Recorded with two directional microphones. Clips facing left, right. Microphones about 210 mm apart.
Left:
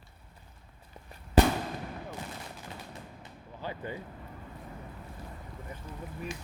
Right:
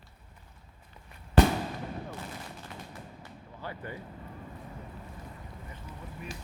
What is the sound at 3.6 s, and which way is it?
Speech, 20° left (ahead or behind).